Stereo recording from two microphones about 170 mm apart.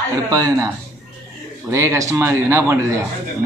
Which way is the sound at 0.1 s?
20° right (ahead or behind).